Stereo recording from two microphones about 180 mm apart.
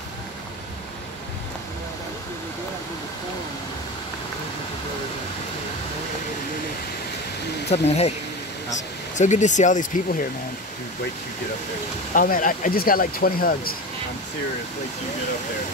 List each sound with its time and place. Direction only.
7.7 s speech: 35° left (ahead or behind)
12.1 s speech: 50° left (ahead or behind)